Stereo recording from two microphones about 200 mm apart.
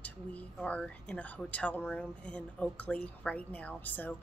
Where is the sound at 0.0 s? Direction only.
5° left (ahead or behind).